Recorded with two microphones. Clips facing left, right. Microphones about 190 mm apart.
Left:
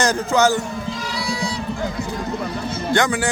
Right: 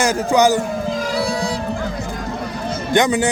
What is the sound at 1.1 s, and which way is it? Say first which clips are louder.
Whale vocalization: right 4 dB; 50° right (ahead or behind).